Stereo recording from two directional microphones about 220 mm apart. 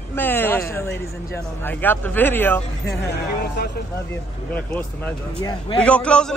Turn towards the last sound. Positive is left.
turn(degrees=5)  # may be behind; listen again after turning